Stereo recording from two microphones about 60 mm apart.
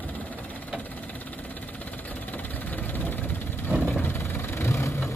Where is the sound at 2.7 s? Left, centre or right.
Left.